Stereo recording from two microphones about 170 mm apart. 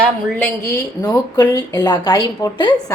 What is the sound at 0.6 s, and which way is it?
Speech, 20° left (ahead or behind).